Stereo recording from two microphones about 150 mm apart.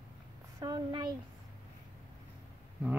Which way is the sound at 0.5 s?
30° right (ahead or behind).